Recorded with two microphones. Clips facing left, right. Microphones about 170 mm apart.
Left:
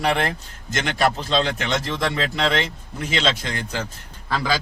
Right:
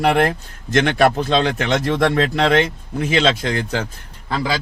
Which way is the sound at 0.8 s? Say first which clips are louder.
Right 7 dB; 60° right (ahead or behind).